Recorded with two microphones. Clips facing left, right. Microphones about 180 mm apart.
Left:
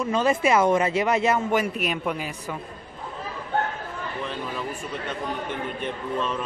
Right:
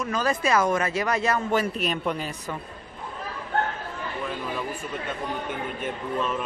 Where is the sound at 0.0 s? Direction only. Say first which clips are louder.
Left 4 dB; 25° left (ahead or behind).